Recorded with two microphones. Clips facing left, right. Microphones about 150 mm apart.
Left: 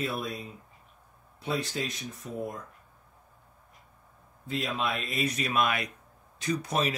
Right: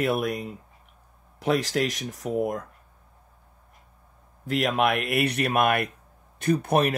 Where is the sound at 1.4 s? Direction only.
90° right.